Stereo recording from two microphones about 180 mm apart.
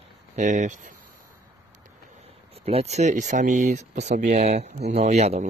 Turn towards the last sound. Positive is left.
turn(degrees=-40)  # may be behind; listen again after turning